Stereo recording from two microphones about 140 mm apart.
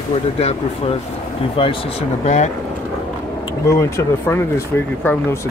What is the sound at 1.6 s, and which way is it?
Speech, 40° left (ahead or behind).